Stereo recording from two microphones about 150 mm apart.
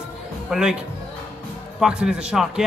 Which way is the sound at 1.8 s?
5° right (ahead or behind).